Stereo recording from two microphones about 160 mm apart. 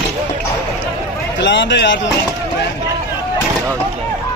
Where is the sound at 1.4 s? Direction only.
90° left.